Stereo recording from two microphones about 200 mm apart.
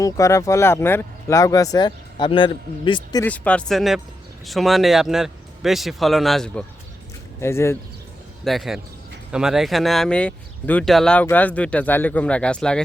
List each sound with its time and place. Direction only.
0.0 s speech: 15° left (ahead or behind)
3.2 s speech: 5° left (ahead or behind)
7.4 s speech: 15° left (ahead or behind)
8.4 s speech: centre (ahead or behind)